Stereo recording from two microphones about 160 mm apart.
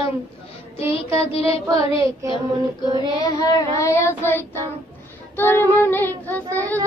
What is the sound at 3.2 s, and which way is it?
Child singing, 20° left (ahead or behind).